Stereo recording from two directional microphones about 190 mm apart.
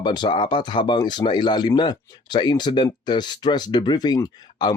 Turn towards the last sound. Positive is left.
turn(degrees=20)  # may be behind; listen again after turning